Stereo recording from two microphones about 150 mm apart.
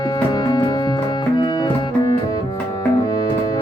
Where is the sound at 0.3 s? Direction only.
30° left (ahead or behind).